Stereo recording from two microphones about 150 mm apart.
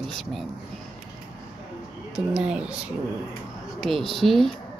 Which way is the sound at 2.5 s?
5° right (ahead or behind).